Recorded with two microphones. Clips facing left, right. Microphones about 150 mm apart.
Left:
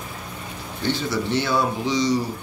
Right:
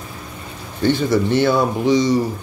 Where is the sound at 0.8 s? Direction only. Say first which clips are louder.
Right 8 dB; 50° right (ahead or behind).